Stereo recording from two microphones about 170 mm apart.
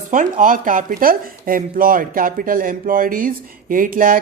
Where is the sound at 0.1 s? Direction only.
50° right (ahead or behind).